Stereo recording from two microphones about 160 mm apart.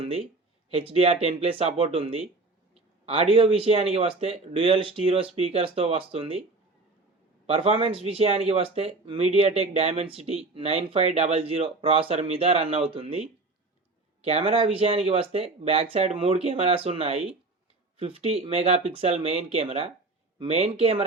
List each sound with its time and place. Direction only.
0.0 s speech: 35° right (ahead or behind)
7.4 s speech: 35° right (ahead or behind)